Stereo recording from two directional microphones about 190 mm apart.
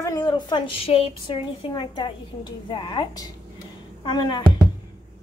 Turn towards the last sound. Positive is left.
turn(degrees=25)  # may be behind; listen again after turning